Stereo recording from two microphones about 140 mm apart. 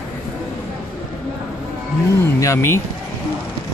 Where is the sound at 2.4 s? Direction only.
20° left (ahead or behind).